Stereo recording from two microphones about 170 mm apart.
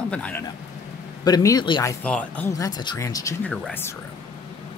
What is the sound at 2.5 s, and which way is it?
Speech, 25° left (ahead or behind).